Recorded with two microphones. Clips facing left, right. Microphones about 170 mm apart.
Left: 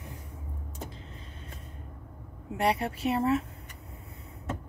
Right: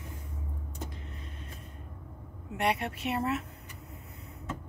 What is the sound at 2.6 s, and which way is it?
Speech, 35° left (ahead or behind).